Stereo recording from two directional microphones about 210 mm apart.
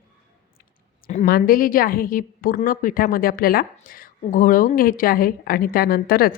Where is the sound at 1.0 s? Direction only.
40° left (ahead or behind).